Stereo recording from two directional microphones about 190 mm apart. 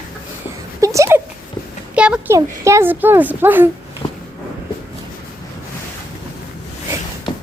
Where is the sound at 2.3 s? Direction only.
15° right (ahead or behind).